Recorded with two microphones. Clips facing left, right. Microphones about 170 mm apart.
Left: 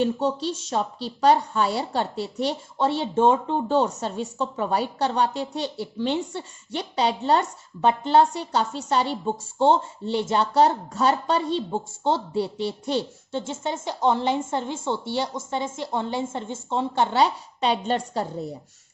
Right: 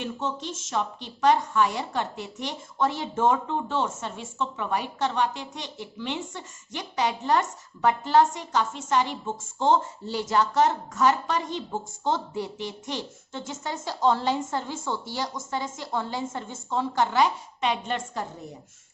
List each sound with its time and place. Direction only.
0.0 s a woman's voice: 35° left (ahead or behind)